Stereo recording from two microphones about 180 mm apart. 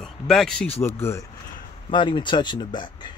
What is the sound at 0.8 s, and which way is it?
Speech, 15° left (ahead or behind).